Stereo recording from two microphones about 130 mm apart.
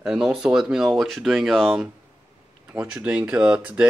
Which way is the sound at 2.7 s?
10° right (ahead or behind).